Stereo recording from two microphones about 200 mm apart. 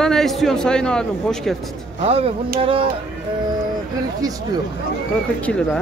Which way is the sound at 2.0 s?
30° right (ahead or behind).